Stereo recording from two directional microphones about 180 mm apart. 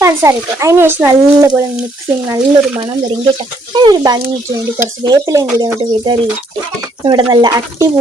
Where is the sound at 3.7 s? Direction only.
25° right (ahead or behind).